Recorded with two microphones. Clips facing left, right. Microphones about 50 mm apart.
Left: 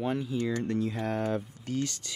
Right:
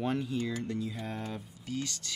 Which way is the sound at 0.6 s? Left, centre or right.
Left.